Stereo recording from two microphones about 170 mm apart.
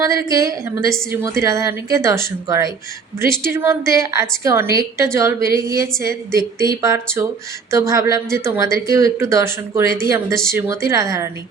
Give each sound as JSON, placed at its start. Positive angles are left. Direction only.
{"t": 0.3, "sound": "speech", "side_deg": -20}